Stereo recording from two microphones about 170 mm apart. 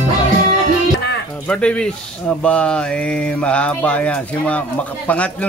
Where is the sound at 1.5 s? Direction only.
5° left (ahead or behind).